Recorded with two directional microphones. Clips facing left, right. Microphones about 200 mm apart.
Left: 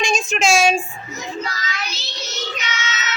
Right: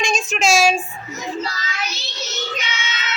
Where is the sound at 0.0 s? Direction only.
Centre (ahead or behind).